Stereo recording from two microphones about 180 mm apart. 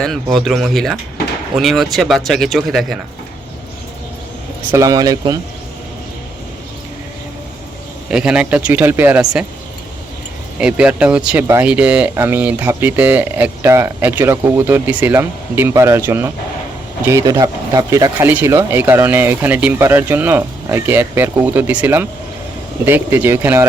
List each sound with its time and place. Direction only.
0.0 s speech: centre (ahead or behind)
4.7 s speech: 20° right (ahead or behind)
8.1 s speech: 5° right (ahead or behind)
10.6 s speech: 5° right (ahead or behind)